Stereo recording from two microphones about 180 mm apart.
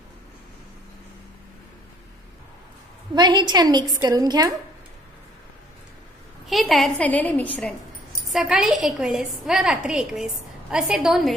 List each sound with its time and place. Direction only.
3.2 s a woman's voice: 25° right (ahead or behind)
6.4 s a woman's voice: centre (ahead or behind)
8.3 s a woman's voice: centre (ahead or behind)